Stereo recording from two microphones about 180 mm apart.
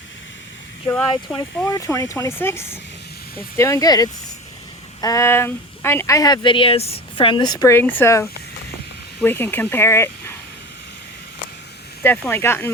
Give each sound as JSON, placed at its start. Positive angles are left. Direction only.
{"t": 1.5, "sound": "speech", "side_deg": 15}
{"t": 12.0, "sound": "speech", "side_deg": 10}